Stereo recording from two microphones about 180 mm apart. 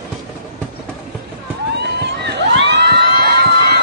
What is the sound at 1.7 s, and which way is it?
Crowd, 70° right (ahead or behind).